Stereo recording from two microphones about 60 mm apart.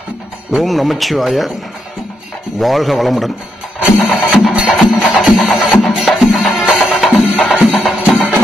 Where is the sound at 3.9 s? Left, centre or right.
Centre.